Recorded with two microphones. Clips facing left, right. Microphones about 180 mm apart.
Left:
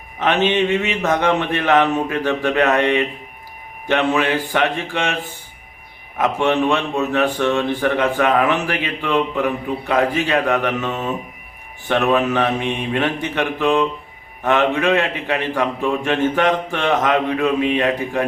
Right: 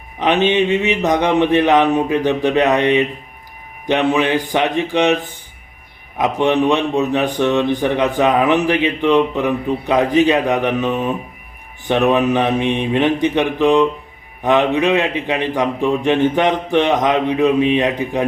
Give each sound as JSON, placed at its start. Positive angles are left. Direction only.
{"t": 0.2, "sound": "a man's voice", "side_deg": -15}
{"t": 4.1, "sound": "a man's voice", "side_deg": -15}
{"t": 6.1, "sound": "a man's voice", "side_deg": -15}